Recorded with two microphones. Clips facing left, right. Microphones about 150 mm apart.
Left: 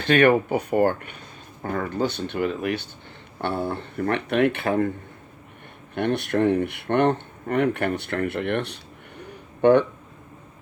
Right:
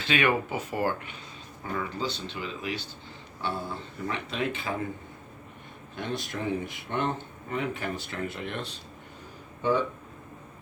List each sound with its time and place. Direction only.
0.0 s speech: 55° left (ahead or behind)
5.9 s speech: 65° left (ahead or behind)
9.2 s a sound: 65° left (ahead or behind)